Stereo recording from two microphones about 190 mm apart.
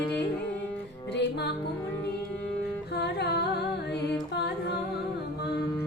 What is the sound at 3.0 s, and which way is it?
Carnatic music, 60° left (ahead or behind).